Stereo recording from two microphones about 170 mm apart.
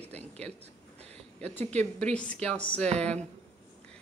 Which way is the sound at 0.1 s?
40° right (ahead or behind).